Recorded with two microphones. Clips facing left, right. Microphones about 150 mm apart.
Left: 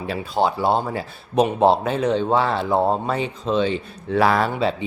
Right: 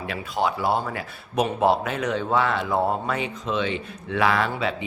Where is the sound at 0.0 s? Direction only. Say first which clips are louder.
Left 4 dB; 30° left (ahead or behind).